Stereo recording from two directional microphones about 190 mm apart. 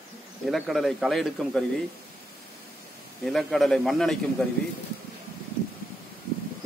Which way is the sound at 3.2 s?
Centre (ahead or behind).